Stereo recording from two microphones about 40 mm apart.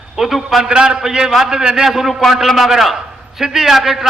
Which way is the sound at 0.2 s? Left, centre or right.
Centre.